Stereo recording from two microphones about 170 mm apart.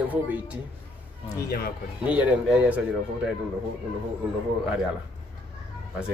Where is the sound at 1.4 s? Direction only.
65° left (ahead or behind).